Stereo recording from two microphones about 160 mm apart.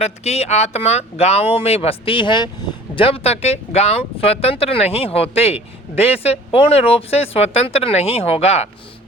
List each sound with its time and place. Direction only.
0.0 s speech: 40° left (ahead or behind)